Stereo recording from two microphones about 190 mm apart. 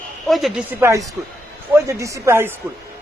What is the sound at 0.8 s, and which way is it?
A man's voice, 15° right (ahead or behind).